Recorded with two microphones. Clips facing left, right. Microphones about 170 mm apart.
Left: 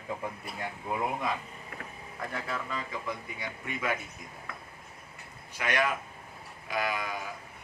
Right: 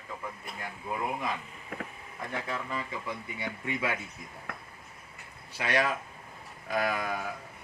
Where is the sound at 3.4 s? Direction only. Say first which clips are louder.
Right 6 dB; 25° right (ahead or behind).